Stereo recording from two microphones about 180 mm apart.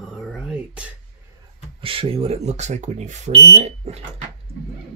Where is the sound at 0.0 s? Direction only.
Centre (ahead or behind).